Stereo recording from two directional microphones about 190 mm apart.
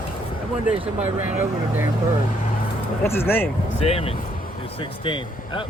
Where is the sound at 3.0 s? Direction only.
10° left (ahead or behind).